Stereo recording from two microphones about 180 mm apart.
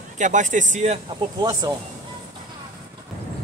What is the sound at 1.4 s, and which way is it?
Speech, 20° right (ahead or behind).